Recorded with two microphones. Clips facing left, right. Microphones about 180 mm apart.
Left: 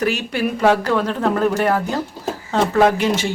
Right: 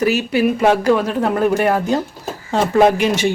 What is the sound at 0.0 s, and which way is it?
Speech, 5° right (ahead or behind).